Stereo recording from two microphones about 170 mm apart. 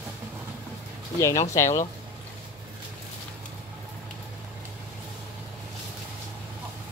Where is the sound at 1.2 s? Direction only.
15° left (ahead or behind).